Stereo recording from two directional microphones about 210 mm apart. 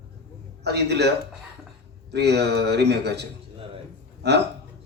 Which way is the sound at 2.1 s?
50° right (ahead or behind).